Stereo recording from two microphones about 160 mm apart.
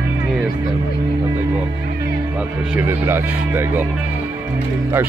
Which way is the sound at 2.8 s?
15° right (ahead or behind).